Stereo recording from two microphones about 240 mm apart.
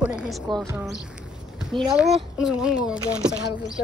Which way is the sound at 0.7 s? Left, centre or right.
Centre.